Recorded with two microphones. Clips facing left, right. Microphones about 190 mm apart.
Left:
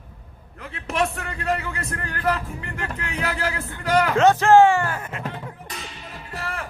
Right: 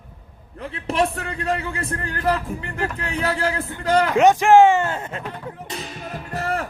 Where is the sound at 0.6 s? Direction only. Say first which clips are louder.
Right 3 dB; 30° right (ahead or behind).